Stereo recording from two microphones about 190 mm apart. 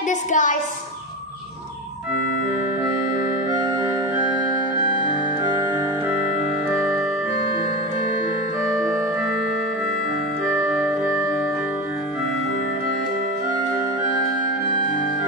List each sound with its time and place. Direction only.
0.1 s a woman's voice: 40° left (ahead or behind)